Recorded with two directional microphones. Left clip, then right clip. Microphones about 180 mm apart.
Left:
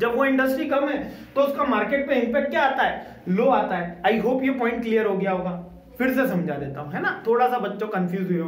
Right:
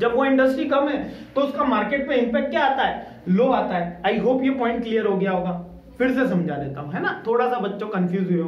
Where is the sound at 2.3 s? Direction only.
30° left (ahead or behind).